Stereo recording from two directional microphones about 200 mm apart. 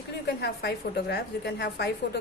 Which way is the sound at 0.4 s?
55° left (ahead or behind).